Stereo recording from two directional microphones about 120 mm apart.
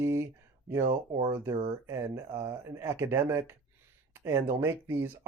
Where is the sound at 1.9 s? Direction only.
25° right (ahead or behind).